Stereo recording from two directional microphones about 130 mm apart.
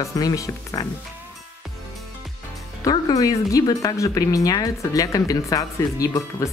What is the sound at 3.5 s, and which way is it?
Speech, 25° left (ahead or behind).